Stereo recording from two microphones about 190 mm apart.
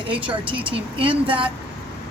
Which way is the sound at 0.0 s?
25° right (ahead or behind).